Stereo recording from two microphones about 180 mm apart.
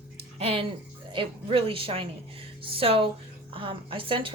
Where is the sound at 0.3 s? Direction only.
30° right (ahead or behind).